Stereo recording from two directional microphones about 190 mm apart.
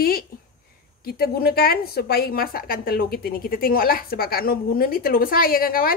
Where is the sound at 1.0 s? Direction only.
55° left (ahead or behind).